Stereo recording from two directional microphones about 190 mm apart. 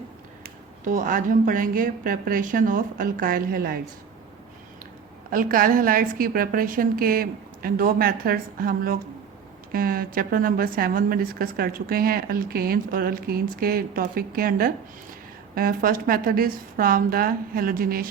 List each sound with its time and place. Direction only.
0.4 s a woman's voice: 45° right (ahead or behind)
5.3 s a woman's voice: 50° right (ahead or behind)